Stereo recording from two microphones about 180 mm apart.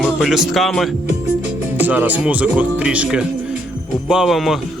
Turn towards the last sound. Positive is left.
turn(degrees=0)  # may be behind; listen again after turning